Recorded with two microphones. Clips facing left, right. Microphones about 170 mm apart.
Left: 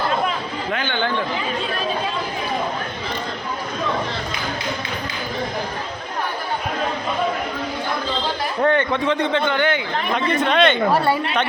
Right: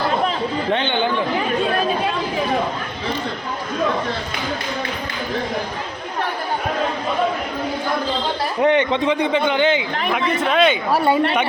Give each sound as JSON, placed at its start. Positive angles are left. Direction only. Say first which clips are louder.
{"t": 0.7, "sound": "speech", "louder": "right 3 dB", "side_deg": -25}
{"t": 8.6, "sound": "a man's voice", "louder": "right 2 dB", "side_deg": -20}
{"t": 10.1, "sound": "speech", "louder": "even", "side_deg": -5}